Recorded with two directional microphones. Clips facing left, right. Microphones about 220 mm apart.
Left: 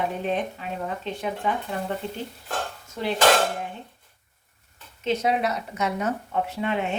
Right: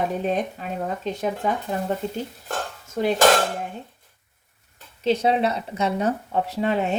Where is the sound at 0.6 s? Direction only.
40° right (ahead or behind).